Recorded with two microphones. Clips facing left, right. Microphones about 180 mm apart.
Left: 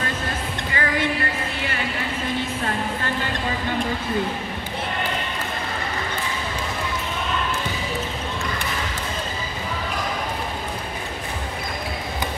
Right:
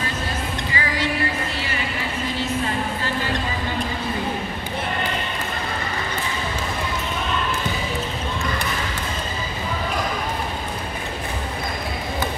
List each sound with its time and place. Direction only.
0.7 s music: 55° left (ahead or behind)